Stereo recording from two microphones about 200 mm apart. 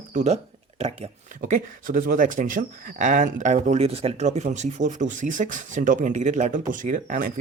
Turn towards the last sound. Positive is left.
turn(degrees=-40)  # may be behind; listen again after turning